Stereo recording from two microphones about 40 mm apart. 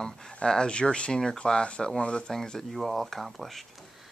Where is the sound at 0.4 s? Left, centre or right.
Left.